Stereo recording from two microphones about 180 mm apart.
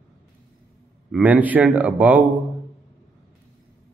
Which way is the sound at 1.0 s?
10° right (ahead or behind).